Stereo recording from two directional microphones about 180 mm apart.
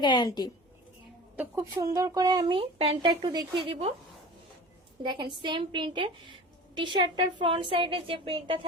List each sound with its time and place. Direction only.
0.0 s a woman's voice: 25° left (ahead or behind)
1.4 s speech: 15° right (ahead or behind); by 3.9 s 30° right (ahead or behind)
5.0 s speech: 25° right (ahead or behind)